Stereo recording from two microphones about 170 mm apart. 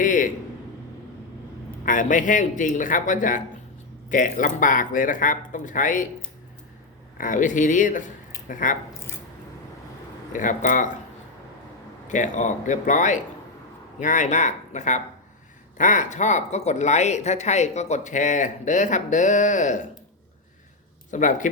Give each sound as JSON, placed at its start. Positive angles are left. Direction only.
{"t": 0.0, "sound": "a man's voice", "side_deg": 50}
{"t": 1.8, "sound": "speech", "side_deg": 50}
{"t": 7.2, "sound": "speech", "side_deg": 50}
{"t": 10.3, "sound": "speech", "side_deg": 50}
{"t": 12.0, "sound": "speech", "side_deg": 45}
{"t": 21.1, "sound": "speech", "side_deg": 50}